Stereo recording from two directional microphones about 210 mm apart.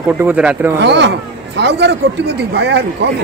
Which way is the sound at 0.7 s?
55° right (ahead or behind).